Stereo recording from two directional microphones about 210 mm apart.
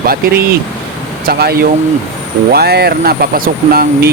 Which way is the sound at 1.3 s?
45° right (ahead or behind).